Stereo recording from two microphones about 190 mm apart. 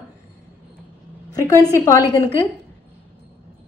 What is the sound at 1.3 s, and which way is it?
A woman's voice, 20° left (ahead or behind).